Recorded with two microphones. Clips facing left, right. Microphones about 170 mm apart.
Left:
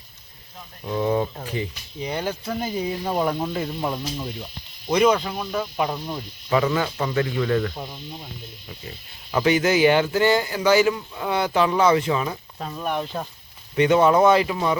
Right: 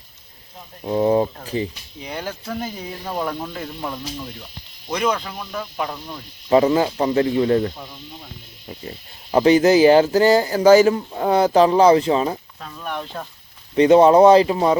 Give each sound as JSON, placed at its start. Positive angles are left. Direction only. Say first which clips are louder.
{"t": 0.9, "sound": "speech", "louder": "right 5 dB", "side_deg": -35}
{"t": 2.0, "sound": "speech", "louder": "left 2 dB", "side_deg": 5}
{"t": 4.9, "sound": "speech", "louder": "left 4 dB", "side_deg": 5}
{"t": 6.5, "sound": "speech", "louder": "right 6 dB", "side_deg": -35}
{"t": 9.3, "sound": "speech", "louder": "right 6 dB", "side_deg": -35}
{"t": 12.5, "sound": "speech", "louder": "left 5 dB", "side_deg": 25}
{"t": 12.8, "sound": "speech", "louder": "left 2 dB", "side_deg": 10}
{"t": 13.7, "sound": "speech", "louder": "right 6 dB", "side_deg": -35}